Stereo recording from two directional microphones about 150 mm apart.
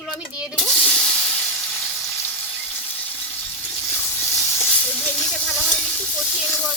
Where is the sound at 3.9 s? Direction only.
15° left (ahead or behind).